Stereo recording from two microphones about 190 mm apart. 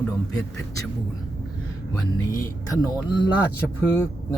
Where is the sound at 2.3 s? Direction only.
20° left (ahead or behind).